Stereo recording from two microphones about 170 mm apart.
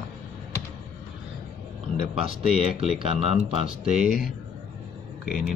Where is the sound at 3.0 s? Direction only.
35° right (ahead or behind).